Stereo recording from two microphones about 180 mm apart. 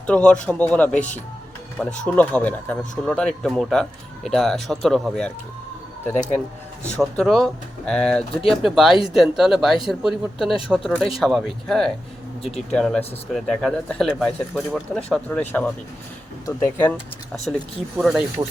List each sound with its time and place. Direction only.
0.1 s speech: 5° left (ahead or behind)
2.0 s speech: 10° left (ahead or behind)
17.9 s speech: 5° right (ahead or behind)
18.4 s speech: 20° right (ahead or behind)